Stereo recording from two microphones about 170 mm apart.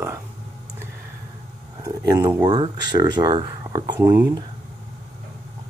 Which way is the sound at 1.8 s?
25° right (ahead or behind).